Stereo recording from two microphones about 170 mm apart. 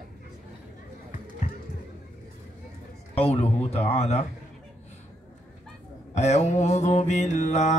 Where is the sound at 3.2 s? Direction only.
40° left (ahead or behind).